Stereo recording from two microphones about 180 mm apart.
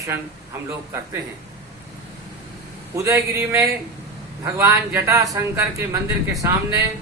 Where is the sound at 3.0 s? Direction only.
15° right (ahead or behind).